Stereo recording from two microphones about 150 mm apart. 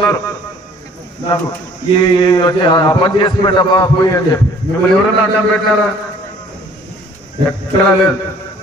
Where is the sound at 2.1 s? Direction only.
30° left (ahead or behind).